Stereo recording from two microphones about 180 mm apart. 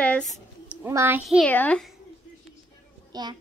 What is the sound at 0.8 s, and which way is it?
Speech, 15° right (ahead or behind).